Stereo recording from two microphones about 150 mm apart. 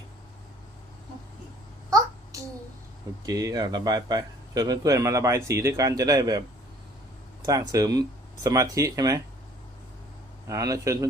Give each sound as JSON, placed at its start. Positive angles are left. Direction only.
{"t": 2.3, "sound": "a sound", "side_deg": -20}
{"t": 3.2, "sound": "speech", "side_deg": -25}
{"t": 7.4, "sound": "speech", "side_deg": -25}
{"t": 10.4, "sound": "speech", "side_deg": -20}